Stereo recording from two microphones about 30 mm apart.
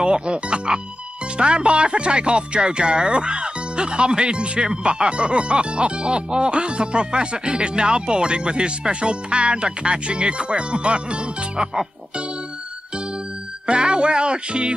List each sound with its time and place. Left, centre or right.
0.0 s speech: right
13.7 s speech: right